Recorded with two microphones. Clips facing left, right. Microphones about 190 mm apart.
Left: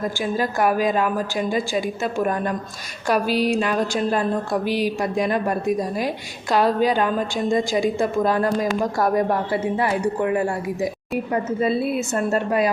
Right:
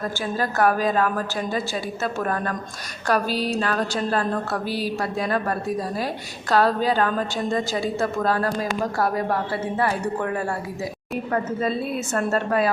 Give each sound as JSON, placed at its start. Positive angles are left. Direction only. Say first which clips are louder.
{"t": 0.0, "sound": "a woman's voice", "louder": "left 3 dB", "side_deg": 10}